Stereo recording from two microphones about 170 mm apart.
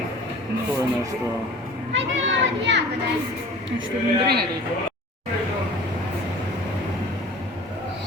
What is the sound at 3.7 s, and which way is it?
Speech, 90° right.